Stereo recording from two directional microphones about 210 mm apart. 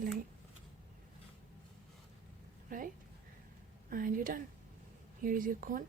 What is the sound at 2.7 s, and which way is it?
Speech, 40° right (ahead or behind).